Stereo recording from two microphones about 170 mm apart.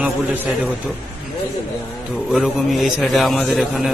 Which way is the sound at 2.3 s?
Centre (ahead or behind).